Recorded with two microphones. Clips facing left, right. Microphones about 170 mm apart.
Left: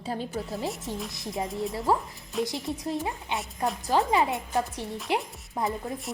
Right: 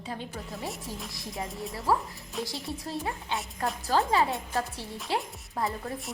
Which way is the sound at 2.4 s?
20° left (ahead or behind).